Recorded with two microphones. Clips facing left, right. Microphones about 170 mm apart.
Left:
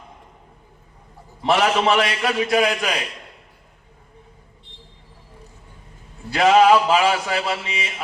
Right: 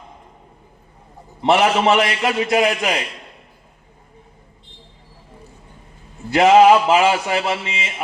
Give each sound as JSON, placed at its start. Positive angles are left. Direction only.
{"t": 1.4, "sound": "mantra", "side_deg": -20}
{"t": 6.3, "sound": "mantra", "side_deg": -25}